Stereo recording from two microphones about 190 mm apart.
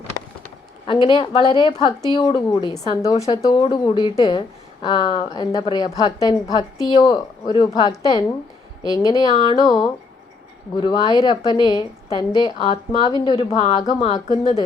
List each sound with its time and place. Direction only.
0.9 s speech: 25° left (ahead or behind)